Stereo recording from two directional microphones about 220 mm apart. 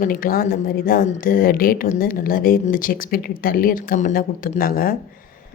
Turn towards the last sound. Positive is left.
turn(degrees=40)  # may be behind; listen again after turning